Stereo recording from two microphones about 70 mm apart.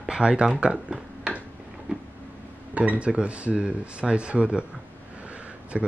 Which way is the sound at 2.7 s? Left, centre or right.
Centre.